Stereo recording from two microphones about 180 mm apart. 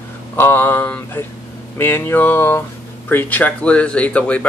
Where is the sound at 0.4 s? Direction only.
10° left (ahead or behind).